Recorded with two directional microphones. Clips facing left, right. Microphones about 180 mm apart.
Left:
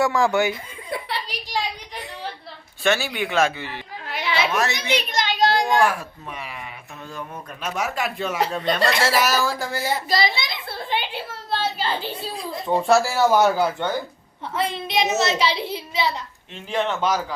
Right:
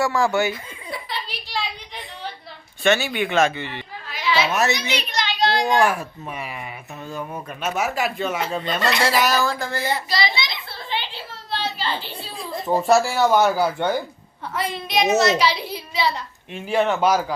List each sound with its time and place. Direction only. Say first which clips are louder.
0.0 s a woman's voice: left 1 dB; 15° left (ahead or behind)
0.9 s giggle: left 3 dB; 55° left (ahead or behind)
1.3 s a sound: left 3 dB; 15° left (ahead or behind)
2.8 s speech: right 2 dB; centre (ahead or behind)
4.0 s a sound: right 2 dB; 60° left (ahead or behind)
4.7 s a sound: left 1 dB; 50° left (ahead or behind)
5.8 s speech: right 1 dB; 5° right (ahead or behind)
7.6 s a woman's voice: right 2 dB; 5° right (ahead or behind)
10.1 s a sound: left 2 dB; 50° left (ahead or behind)
12.6 s speech: right 1 dB; 5° right (ahead or behind)
13.7 s a man's voice: right 3 dB; 15° right (ahead or behind)
14.5 s a woman's voice: even; 25° left (ahead or behind)
16.6 s a man's voice: right 4 dB; 10° right (ahead or behind)